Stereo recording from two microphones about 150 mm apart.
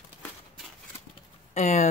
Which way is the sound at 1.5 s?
50° left (ahead or behind).